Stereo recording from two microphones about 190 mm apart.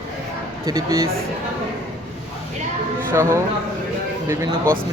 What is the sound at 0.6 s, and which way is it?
Speech, 15° right (ahead or behind).